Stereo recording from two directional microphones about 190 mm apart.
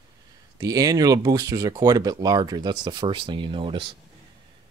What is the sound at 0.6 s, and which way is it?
Speech, 20° right (ahead or behind).